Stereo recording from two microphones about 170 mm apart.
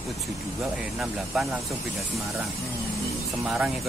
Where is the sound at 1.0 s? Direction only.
Centre (ahead or behind).